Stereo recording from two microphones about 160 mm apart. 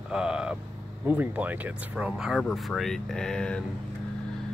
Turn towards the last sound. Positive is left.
turn(degrees=5)  # may be behind; listen again after turning